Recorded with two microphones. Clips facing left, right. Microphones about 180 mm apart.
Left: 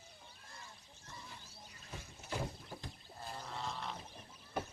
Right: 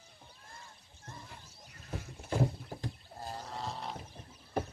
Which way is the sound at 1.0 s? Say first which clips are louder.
Right 4 dB; 55° right (ahead or behind).